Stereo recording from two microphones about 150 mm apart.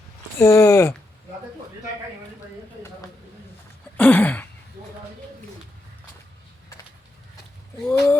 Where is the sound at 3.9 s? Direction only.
10° left (ahead or behind).